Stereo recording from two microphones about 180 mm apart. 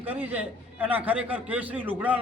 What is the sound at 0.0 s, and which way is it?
A man's voice, 10° right (ahead or behind).